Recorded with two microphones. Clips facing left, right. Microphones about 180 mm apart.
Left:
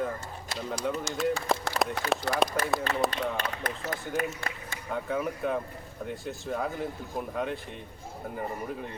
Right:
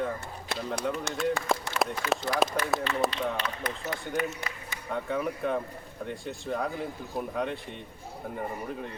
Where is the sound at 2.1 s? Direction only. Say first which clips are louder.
Right 1 dB; centre (ahead or behind).